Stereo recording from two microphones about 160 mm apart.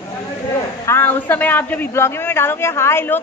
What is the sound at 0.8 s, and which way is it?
A man's voice, 15° left (ahead or behind).